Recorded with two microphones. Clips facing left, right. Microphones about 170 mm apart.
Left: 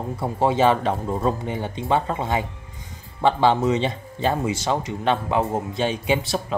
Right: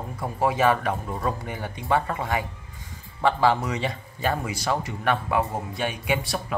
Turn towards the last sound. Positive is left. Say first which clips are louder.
# left 4 dB
turn(degrees=25)  # may be behind; listen again after turning